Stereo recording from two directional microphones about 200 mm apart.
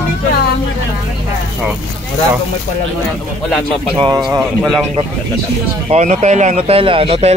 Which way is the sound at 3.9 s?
20° right (ahead or behind).